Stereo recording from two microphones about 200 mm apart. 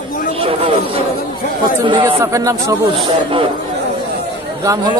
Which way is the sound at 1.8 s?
25° right (ahead or behind).